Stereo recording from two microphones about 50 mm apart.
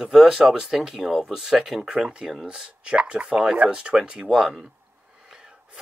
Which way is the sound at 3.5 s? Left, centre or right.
Right.